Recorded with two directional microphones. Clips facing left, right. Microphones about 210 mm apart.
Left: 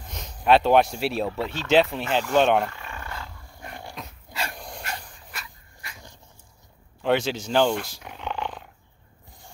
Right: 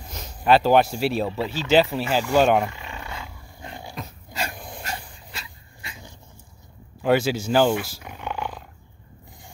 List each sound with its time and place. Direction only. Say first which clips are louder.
0.1 s speech: right 1 dB; centre (ahead or behind)
2.7 s roar: right 1 dB; 15° right (ahead or behind)
3.8 s dog: right 3 dB; centre (ahead or behind)
5.3 s dog: right 1 dB; 25° right (ahead or behind)
7.0 s speech: right 3 dB; 5° right (ahead or behind)